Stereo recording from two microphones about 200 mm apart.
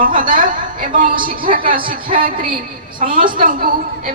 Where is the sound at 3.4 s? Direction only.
45° right (ahead or behind).